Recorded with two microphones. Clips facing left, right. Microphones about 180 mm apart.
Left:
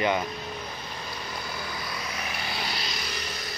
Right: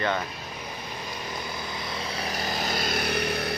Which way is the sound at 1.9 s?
30° right (ahead or behind).